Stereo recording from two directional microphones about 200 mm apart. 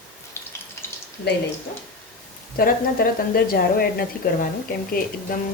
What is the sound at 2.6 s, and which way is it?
Speech, 45° left (ahead or behind).